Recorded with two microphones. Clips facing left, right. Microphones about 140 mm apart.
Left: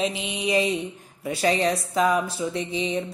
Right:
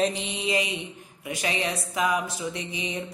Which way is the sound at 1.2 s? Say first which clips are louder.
Left 7 dB; 35° left (ahead or behind).